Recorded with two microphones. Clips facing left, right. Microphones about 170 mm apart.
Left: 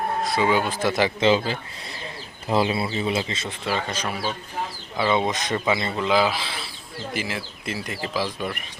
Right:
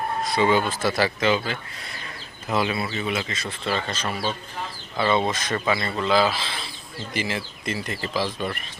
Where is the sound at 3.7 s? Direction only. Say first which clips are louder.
Even; 10° left (ahead or behind).